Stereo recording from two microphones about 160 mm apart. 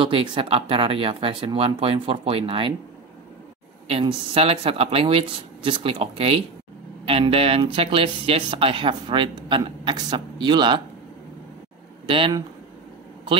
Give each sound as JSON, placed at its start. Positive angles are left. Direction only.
{"t": 0.0, "sound": "speech", "side_deg": -30}
{"t": 3.8, "sound": "speech", "side_deg": -35}
{"t": 12.1, "sound": "speech", "side_deg": -30}